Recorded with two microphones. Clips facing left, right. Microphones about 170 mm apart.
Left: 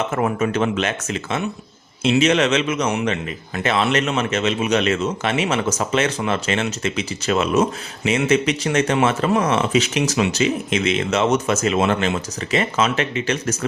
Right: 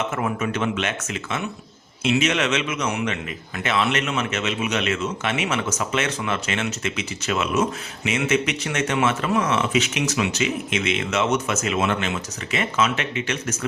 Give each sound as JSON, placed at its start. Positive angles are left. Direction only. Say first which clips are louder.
{"t": 0.2, "sound": "speech", "louder": "left 5 dB", "side_deg": 40}